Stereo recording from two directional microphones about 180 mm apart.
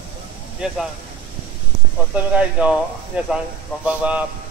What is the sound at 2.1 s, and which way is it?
Speech, 5° right (ahead or behind).